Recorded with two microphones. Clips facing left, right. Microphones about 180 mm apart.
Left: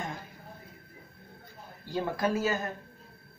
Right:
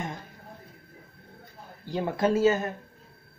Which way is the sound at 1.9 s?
20° right (ahead or behind).